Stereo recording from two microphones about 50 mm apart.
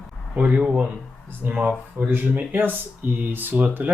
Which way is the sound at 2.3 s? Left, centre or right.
Right.